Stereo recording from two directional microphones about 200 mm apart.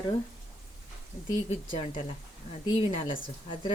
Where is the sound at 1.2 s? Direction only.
25° left (ahead or behind).